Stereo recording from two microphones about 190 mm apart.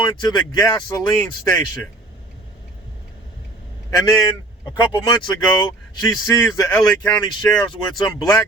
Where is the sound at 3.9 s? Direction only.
20° left (ahead or behind).